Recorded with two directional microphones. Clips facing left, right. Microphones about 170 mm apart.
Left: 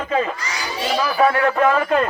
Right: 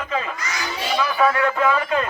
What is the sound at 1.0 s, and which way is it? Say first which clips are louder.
Speech: left 2 dB; 35° left (ahead or behind).